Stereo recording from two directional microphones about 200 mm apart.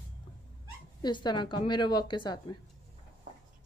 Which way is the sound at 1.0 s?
20° left (ahead or behind).